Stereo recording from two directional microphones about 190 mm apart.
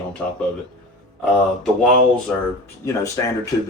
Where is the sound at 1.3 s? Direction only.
Centre (ahead or behind).